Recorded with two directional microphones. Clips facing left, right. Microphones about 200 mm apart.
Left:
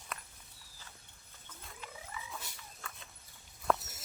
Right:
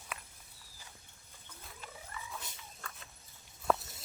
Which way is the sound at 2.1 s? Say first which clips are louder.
Even; centre (ahead or behind).